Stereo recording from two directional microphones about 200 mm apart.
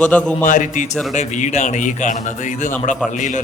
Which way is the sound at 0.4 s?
40° left (ahead or behind).